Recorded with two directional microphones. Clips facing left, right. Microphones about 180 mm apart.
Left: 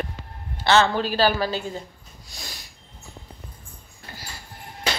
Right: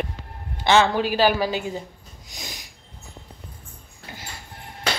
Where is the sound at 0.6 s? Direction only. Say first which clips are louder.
Right 1 dB; 15° right (ahead or behind).